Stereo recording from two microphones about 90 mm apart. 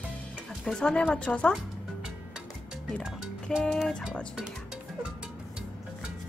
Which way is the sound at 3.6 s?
5° left (ahead or behind).